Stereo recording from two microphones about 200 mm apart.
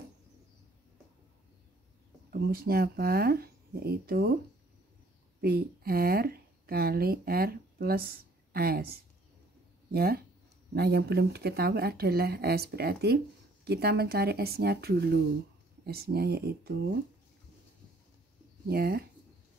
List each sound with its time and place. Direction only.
2.3 s speech: 50° right (ahead or behind)
5.4 s speech: 50° right (ahead or behind)
18.7 s speech: 50° right (ahead or behind)